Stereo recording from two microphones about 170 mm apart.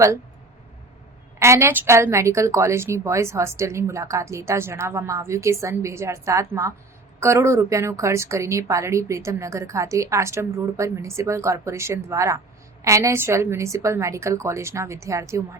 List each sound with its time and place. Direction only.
1.4 s a woman's voice: 15° right (ahead or behind)